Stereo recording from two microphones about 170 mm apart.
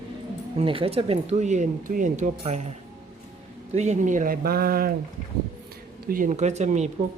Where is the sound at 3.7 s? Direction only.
40° right (ahead or behind); by 4.9 s 60° right (ahead or behind).